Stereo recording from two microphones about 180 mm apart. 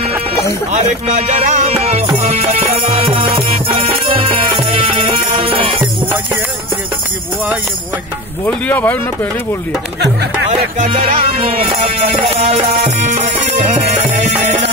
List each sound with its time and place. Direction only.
0.7 s music: 40° right (ahead or behind)
8.5 s speech: 10° left (ahead or behind)
10.8 s music: 40° right (ahead or behind)